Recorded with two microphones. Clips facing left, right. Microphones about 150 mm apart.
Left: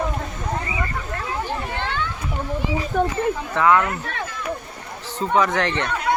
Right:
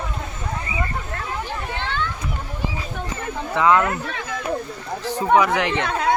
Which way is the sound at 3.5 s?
20° right (ahead or behind).